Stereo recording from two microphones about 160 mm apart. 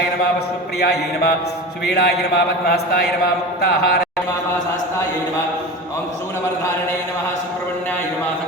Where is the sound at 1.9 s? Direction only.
90° left.